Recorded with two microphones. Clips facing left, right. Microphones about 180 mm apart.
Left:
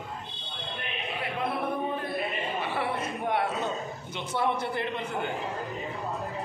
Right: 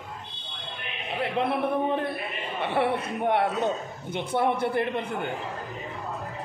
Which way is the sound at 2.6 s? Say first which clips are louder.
Right 9 dB; 60° right (ahead or behind).